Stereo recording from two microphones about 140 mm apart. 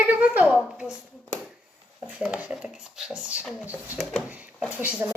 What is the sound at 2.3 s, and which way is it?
A woman's voice, 10° right (ahead or behind).